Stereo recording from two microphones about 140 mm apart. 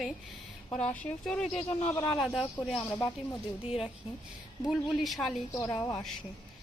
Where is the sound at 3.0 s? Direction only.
25° left (ahead or behind).